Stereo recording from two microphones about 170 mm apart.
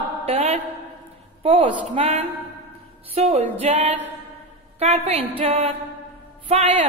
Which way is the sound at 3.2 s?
40° right (ahead or behind).